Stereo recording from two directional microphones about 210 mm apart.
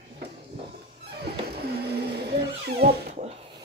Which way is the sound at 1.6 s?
50° right (ahead or behind).